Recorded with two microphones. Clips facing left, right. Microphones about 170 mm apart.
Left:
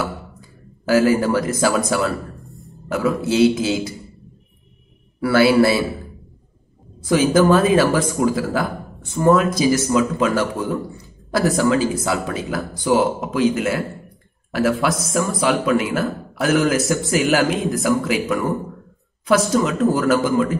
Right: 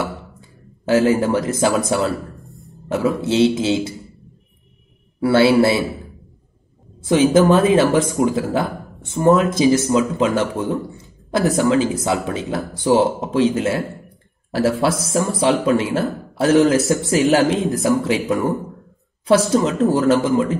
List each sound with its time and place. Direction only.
0.8 s speech: 25° right (ahead or behind)
5.2 s speech: 25° right (ahead or behind)
7.1 s speech: 20° right (ahead or behind)
19.5 s speech: 25° right (ahead or behind)